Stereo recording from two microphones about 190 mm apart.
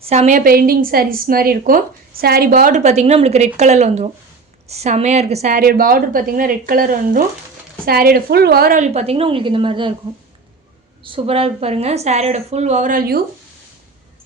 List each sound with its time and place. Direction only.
0.0 s a woman's voice: 35° right (ahead or behind)
11.0 s speech: 30° right (ahead or behind); by 13.2 s 50° right (ahead or behind)